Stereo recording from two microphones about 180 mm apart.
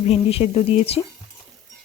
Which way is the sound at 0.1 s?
35° left (ahead or behind).